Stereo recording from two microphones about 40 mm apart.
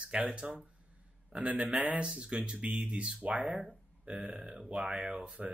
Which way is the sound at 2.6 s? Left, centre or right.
Right.